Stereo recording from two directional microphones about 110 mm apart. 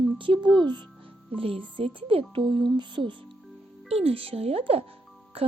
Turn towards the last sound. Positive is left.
turn(degrees=-60)  # may be behind; listen again after turning